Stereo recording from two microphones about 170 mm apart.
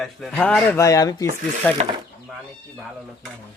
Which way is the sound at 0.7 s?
20° left (ahead or behind).